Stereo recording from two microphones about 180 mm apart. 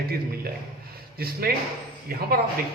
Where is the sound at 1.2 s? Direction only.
55° right (ahead or behind).